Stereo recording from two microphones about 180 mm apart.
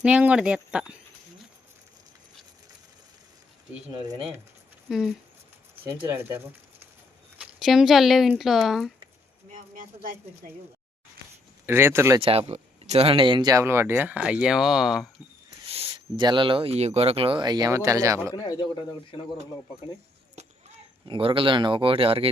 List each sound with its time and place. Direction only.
0.0 s speech: 5° right (ahead or behind)
3.9 s speech: 25° right (ahead or behind)
4.9 s speech: centre (ahead or behind)
5.8 s speech: 15° right (ahead or behind)
7.3 s speech: centre (ahead or behind)
9.7 s speech: 50° right (ahead or behind)
11.6 s speech: 10° right (ahead or behind)
12.2 s speech: 35° right (ahead or behind); by 15.1 s centre (ahead or behind)
15.7 s speech: 25° right (ahead or behind)
18.3 s speech: 20° left (ahead or behind)
21.1 s speech: 30° right (ahead or behind)